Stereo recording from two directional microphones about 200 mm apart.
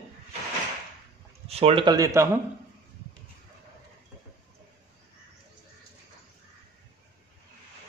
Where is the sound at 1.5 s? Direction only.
30° right (ahead or behind); by 2.4 s 15° right (ahead or behind).